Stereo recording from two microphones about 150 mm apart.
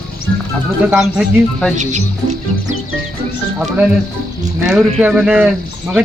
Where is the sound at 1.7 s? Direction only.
55° right (ahead or behind).